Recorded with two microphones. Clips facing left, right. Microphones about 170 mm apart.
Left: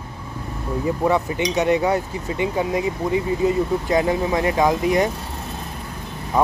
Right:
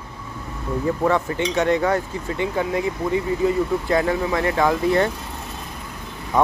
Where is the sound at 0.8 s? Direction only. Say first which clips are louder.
Even; 15° left (ahead or behind).